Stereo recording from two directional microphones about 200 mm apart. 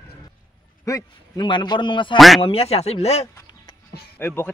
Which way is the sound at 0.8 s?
15° left (ahead or behind).